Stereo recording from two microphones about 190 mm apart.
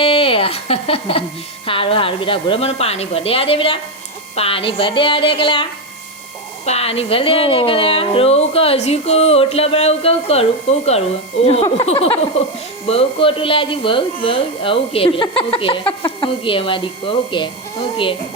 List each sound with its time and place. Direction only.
0.0 s a woman's voice: 30° left (ahead or behind)
6.7 s a woman's voice: 30° left (ahead or behind)